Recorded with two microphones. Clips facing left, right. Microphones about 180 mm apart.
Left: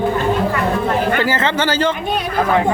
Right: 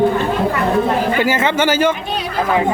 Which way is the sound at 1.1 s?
10° right (ahead or behind).